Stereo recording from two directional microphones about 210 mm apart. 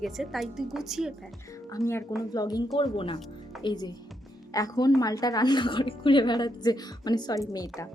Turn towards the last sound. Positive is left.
turn(degrees=15)  # may be behind; listen again after turning